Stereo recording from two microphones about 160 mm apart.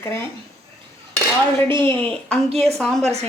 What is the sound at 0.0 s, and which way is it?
Speech, 15° left (ahead or behind).